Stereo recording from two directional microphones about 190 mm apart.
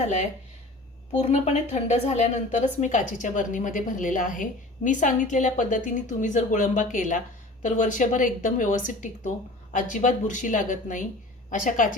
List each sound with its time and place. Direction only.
1.2 s a woman's voice: 35° left (ahead or behind)